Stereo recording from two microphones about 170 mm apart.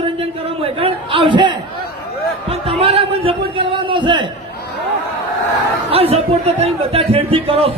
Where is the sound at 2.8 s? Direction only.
35° right (ahead or behind).